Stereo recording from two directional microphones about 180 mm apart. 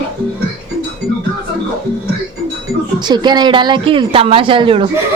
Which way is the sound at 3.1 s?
25° right (ahead or behind).